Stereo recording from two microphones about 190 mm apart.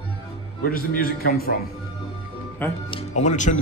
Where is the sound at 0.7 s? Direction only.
50° left (ahead or behind).